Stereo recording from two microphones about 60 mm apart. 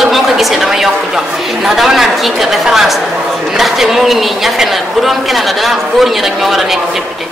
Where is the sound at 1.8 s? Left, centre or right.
Centre.